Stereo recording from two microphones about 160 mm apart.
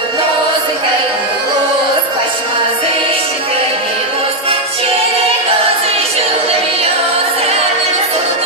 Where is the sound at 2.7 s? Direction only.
35° right (ahead or behind).